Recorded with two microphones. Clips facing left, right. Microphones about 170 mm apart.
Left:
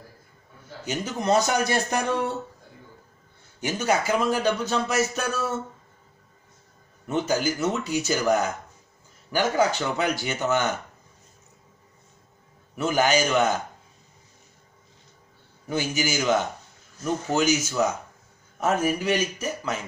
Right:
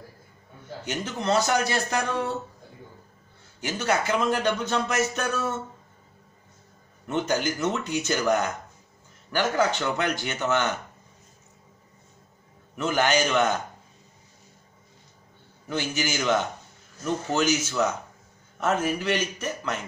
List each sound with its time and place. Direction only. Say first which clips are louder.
0.8 s a man's voice: left 2 dB; 10° left (ahead or behind)
3.6 s a man's voice: left 2 dB; 10° left (ahead or behind)
7.1 s a man's voice: left 1 dB; 5° left (ahead or behind)
12.7 s a man's voice: left 1 dB; 10° left (ahead or behind)
15.7 s a man's voice: left 2 dB; 10° left (ahead or behind)